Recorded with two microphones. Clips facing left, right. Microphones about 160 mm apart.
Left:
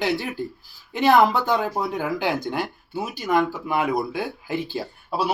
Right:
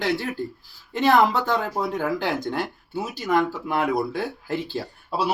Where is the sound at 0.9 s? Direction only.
5° left (ahead or behind).